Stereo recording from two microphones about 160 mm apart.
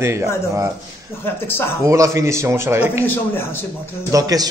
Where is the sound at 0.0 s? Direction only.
15° right (ahead or behind).